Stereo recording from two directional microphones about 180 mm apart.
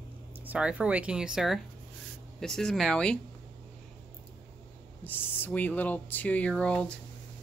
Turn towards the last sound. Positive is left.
turn(degrees=5)  # may be behind; listen again after turning